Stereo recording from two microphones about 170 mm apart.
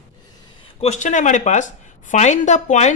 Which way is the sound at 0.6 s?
40° left (ahead or behind).